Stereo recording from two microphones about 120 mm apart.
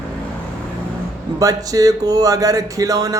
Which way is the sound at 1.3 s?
30° right (ahead or behind).